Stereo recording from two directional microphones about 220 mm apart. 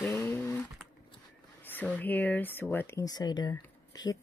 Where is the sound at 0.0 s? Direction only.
10° left (ahead or behind).